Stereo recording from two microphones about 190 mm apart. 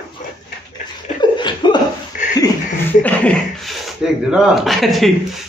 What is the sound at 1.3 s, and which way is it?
Laughter, 25° left (ahead or behind).